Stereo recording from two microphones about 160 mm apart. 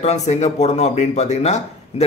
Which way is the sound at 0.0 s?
45° left (ahead or behind).